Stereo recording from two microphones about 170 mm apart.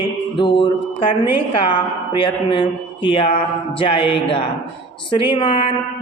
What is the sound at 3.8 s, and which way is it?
Speech, 30° left (ahead or behind).